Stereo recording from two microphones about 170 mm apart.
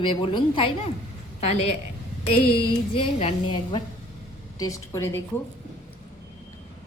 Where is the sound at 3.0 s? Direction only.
40° left (ahead or behind).